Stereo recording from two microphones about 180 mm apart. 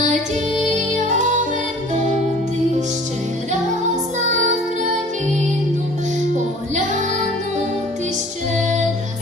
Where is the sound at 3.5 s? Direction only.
40° right (ahead or behind).